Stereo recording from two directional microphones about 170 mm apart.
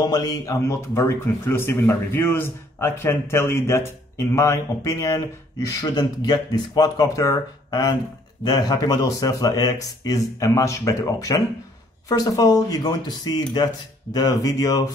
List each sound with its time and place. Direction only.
0.0 s a man's voice: 20° left (ahead or behind)